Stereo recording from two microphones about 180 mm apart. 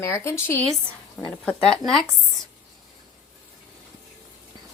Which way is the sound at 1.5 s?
5° left (ahead or behind).